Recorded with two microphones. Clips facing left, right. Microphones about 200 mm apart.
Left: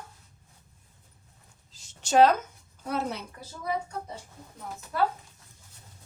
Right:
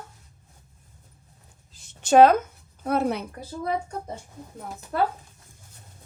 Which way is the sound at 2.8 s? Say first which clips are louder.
Right 7 dB; 55° right (ahead or behind).